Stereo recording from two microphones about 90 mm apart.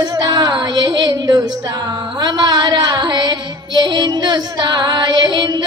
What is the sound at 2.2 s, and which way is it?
Music, 50° right (ahead or behind).